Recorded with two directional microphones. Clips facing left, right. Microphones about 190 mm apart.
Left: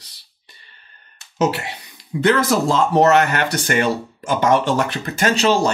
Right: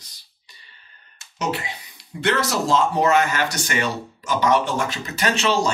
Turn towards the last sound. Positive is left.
turn(degrees=40)  # may be behind; listen again after turning